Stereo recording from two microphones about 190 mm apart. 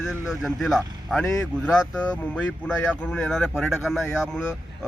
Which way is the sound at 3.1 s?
5° left (ahead or behind).